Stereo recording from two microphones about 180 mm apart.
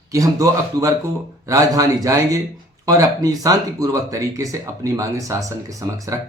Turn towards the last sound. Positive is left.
turn(degrees=-20)  # may be behind; listen again after turning